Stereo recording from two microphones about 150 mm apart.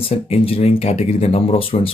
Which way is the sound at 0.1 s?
40° left (ahead or behind).